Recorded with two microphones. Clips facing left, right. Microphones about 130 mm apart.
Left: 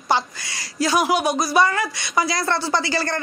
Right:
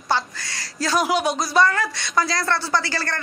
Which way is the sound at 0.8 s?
10° left (ahead or behind).